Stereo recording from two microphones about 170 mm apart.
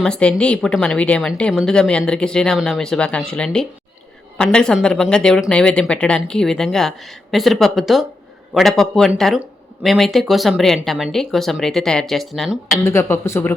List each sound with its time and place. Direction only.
0.0 s speech: 5° left (ahead or behind)
12.8 s a woman's voice: 15° left (ahead or behind)